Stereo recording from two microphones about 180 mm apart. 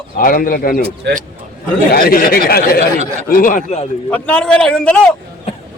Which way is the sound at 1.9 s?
55° left (ahead or behind).